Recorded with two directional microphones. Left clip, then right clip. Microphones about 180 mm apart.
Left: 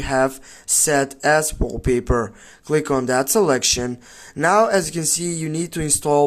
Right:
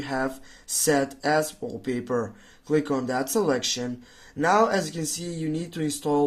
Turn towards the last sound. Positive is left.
turn(degrees=40)  # may be behind; listen again after turning